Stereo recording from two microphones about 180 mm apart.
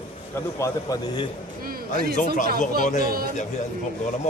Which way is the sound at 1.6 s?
55° right (ahead or behind).